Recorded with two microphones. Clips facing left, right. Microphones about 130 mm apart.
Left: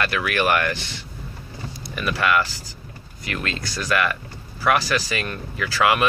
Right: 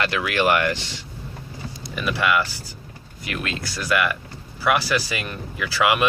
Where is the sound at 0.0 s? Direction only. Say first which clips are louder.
Right 1 dB; 20° right (ahead or behind).